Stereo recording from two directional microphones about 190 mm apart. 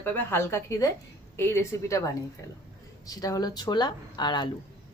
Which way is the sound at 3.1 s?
20° left (ahead or behind).